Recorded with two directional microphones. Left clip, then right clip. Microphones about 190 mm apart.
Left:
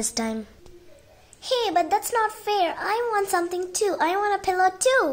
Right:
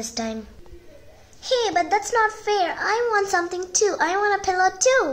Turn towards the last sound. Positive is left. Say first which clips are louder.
# right 1 dB
turn(degrees=25)  # may be behind; listen again after turning